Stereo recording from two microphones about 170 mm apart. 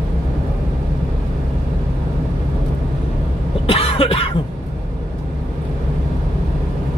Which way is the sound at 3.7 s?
35° left (ahead or behind).